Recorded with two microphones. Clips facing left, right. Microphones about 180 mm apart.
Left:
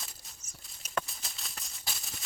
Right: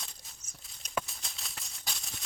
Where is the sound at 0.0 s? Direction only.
Centre (ahead or behind).